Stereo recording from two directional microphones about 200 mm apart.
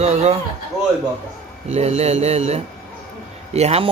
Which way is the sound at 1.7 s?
30° right (ahead or behind).